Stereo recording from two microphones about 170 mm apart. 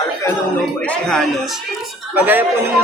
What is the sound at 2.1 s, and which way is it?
Speech, 10° right (ahead or behind).